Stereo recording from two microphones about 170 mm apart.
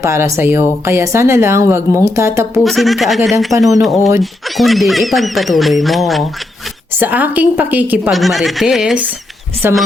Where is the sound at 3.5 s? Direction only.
20° right (ahead or behind).